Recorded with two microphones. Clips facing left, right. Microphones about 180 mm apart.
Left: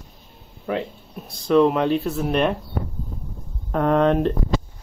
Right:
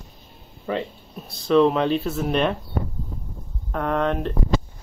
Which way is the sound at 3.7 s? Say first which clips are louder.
Left 5 dB; 25° left (ahead or behind).